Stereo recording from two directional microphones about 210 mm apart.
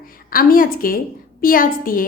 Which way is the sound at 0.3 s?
45° left (ahead or behind).